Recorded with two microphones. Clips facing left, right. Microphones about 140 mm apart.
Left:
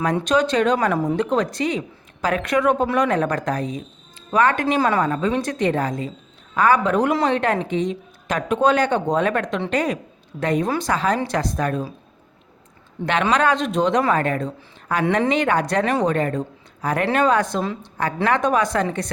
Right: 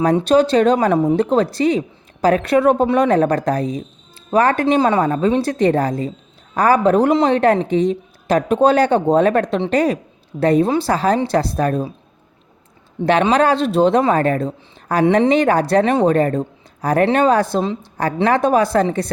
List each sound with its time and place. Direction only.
0.0 s a woman's voice: 35° right (ahead or behind)
13.0 s speech: 20° right (ahead or behind)
13.3 s a woman's voice: 35° right (ahead or behind)